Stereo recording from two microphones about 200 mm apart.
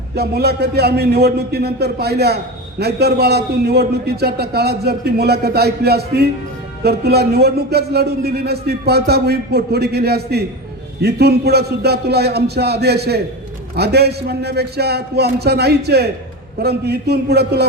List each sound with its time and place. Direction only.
0.2 s a man's voice: 55° right (ahead or behind)